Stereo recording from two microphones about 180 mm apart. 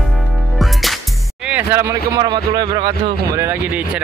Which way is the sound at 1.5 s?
10° right (ahead or behind).